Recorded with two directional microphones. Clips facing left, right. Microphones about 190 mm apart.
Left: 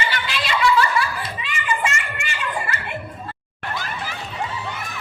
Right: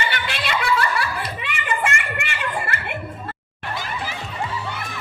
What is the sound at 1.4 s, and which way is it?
Children playing, 60° right (ahead or behind).